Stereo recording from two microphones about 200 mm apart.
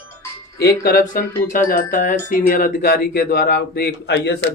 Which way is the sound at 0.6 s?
50° left (ahead or behind).